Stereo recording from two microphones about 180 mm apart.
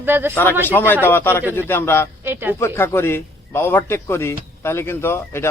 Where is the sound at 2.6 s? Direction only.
15° left (ahead or behind).